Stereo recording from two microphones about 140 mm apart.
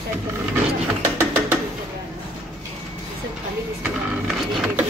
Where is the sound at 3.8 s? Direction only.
5° right (ahead or behind).